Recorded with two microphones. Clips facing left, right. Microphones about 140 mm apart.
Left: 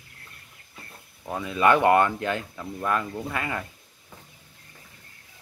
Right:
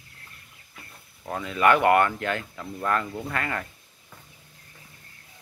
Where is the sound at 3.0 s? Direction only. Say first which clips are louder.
Left 1 dB; centre (ahead or behind).